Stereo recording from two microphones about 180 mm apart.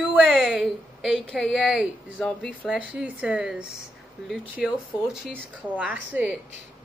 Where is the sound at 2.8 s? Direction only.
5° right (ahead or behind).